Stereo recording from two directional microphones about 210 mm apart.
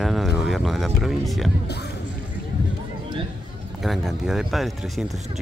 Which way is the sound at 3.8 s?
Centre (ahead or behind).